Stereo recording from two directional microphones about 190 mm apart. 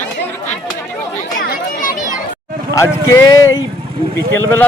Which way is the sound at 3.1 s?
15° left (ahead or behind).